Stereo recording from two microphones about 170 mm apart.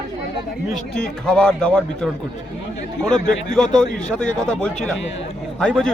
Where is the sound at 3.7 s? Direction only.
5° left (ahead or behind).